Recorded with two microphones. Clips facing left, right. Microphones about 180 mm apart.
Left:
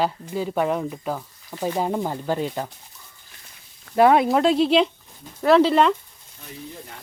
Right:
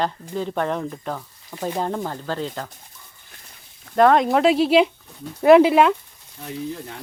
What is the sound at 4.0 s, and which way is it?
Speech, 10° left (ahead or behind).